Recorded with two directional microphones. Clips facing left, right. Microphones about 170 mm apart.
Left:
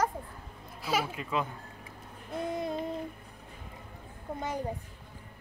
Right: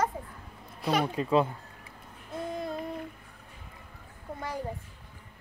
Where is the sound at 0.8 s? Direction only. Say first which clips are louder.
Right 4 dB; 5° left (ahead or behind).